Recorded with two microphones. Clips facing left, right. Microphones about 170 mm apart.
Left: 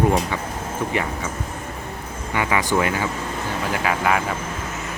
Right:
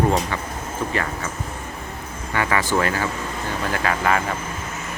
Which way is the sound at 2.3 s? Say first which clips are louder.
Even; 15° left (ahead or behind).